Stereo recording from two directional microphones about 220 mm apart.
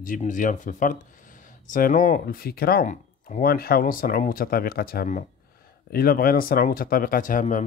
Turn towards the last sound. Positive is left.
turn(degrees=35)  # may be behind; listen again after turning